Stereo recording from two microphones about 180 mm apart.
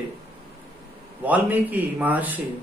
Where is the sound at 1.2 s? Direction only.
10° right (ahead or behind).